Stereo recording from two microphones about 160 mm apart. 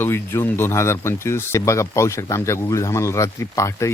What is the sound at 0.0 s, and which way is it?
Speech, 15° left (ahead or behind).